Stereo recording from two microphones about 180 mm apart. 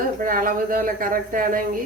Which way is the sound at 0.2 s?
50° right (ahead or behind).